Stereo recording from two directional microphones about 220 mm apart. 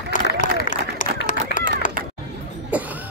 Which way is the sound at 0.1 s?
35° left (ahead or behind).